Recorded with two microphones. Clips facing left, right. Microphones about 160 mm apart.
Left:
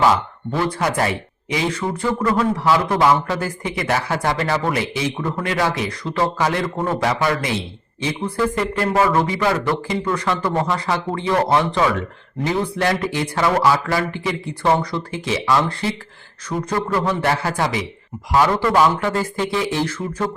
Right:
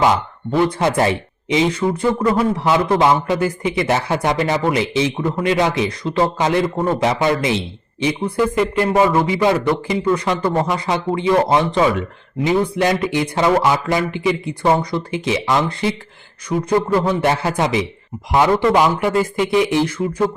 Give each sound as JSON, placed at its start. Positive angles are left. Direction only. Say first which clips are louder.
{"t": 0.0, "sound": "speech", "louder": "right 1 dB", "side_deg": -20}